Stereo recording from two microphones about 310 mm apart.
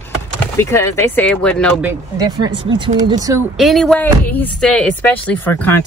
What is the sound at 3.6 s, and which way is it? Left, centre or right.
Speech, centre.